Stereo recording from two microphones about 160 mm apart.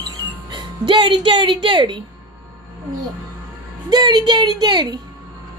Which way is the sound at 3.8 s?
25° right (ahead or behind).